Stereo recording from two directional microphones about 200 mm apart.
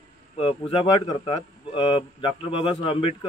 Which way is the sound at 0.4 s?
30° left (ahead or behind).